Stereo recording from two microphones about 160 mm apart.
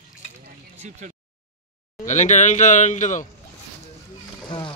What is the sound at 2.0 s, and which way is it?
Speech, 50° left (ahead or behind).